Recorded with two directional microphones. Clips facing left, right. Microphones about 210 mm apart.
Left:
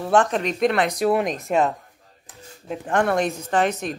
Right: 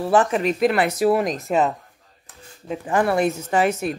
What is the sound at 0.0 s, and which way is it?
Speech, 5° right (ahead or behind).